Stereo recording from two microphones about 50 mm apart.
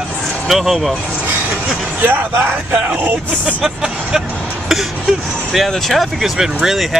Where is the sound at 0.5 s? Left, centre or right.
Centre.